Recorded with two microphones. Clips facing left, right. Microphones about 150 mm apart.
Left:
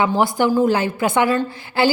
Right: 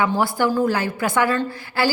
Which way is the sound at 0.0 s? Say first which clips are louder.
Left 2 dB; 20° left (ahead or behind).